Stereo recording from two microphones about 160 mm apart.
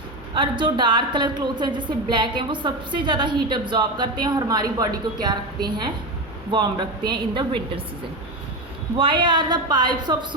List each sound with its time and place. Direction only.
0.3 s a woman's voice: 30° right (ahead or behind)
9.0 s a woman's voice: 30° right (ahead or behind)